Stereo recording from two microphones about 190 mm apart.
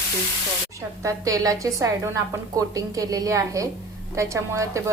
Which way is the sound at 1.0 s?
15° right (ahead or behind).